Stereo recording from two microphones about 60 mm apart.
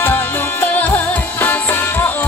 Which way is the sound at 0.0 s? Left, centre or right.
Left.